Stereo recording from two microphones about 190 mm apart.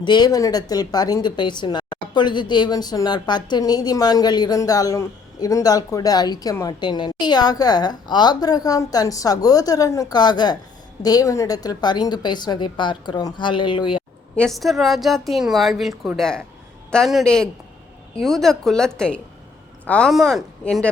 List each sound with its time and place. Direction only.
0.0 s a woman's voice: 20° left (ahead or behind)
14.3 s a woman's voice: centre (ahead or behind)